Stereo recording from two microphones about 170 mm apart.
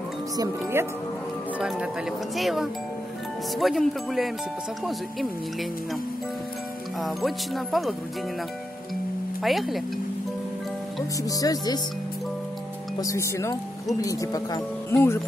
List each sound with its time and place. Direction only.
0.4 s speech: 15° right (ahead or behind)
2.3 s speech: centre (ahead or behind)
7.0 s speech: centre (ahead or behind)
9.4 s speech: centre (ahead or behind)
11.2 s speech: 20° left (ahead or behind)
13.0 s speech: 20° left (ahead or behind)